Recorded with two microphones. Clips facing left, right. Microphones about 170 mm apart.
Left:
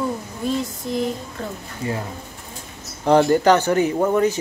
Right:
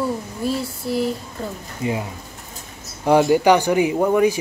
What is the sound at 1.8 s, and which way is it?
Speech, 15° right (ahead or behind).